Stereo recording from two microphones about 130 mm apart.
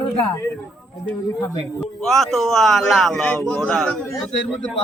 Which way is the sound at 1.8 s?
Centre (ahead or behind).